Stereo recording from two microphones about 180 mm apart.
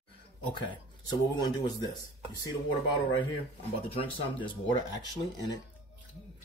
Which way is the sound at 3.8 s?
30° left (ahead or behind).